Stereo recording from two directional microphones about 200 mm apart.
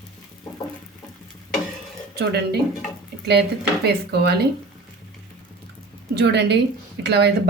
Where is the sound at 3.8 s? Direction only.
55° right (ahead or behind).